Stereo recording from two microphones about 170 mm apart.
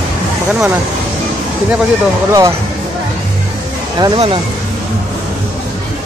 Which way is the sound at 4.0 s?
30° right (ahead or behind).